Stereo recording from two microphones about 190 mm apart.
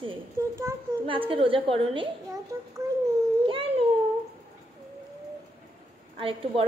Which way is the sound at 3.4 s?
30° right (ahead or behind).